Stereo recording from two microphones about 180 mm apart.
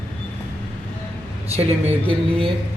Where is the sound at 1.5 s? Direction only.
35° right (ahead or behind).